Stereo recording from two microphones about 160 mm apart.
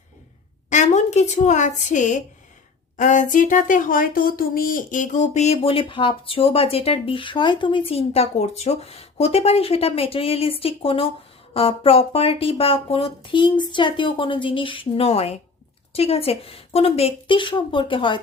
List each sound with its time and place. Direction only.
0.7 s a woman's voice: 45° left (ahead or behind); by 18.2 s 30° left (ahead or behind)